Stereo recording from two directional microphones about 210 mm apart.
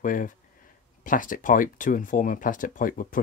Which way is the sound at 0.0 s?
40° left (ahead or behind).